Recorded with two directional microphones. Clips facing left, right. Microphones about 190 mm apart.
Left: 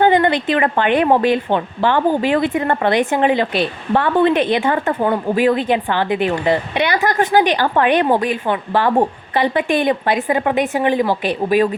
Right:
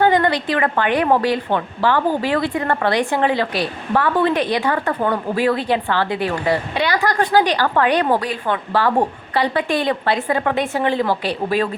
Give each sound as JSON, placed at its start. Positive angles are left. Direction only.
{"t": 0.0, "sound": "a woman's voice", "side_deg": 20}